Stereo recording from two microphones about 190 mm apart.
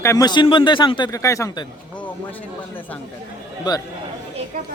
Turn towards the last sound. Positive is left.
turn(degrees=20)  # may be behind; listen again after turning